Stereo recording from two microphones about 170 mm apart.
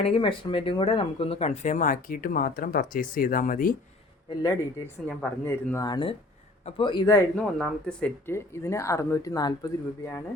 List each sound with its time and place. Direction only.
0.0 s speech: 30° left (ahead or behind); by 3.8 s 55° left (ahead or behind)
5.0 s speech: 10° left (ahead or behind)
7.3 s speech: 5° left (ahead or behind)